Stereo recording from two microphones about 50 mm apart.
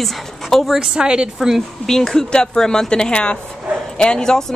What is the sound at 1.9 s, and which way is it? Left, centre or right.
Speech, centre.